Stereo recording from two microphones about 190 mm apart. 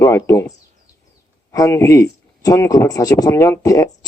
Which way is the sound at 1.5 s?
15° left (ahead or behind).